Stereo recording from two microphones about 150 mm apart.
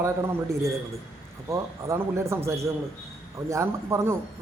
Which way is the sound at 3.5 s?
20° right (ahead or behind).